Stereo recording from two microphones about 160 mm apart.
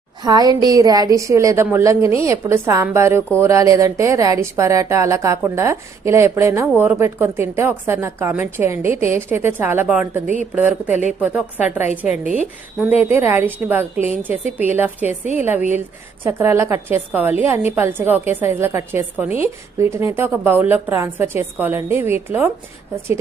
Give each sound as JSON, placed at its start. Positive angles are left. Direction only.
{"t": 0.2, "sound": "a woman's voice", "side_deg": -25}